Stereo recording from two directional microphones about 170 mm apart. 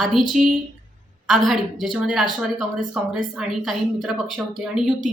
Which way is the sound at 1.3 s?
Centre (ahead or behind).